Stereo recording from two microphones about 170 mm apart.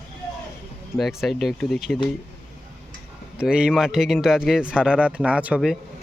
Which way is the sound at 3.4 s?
5° right (ahead or behind).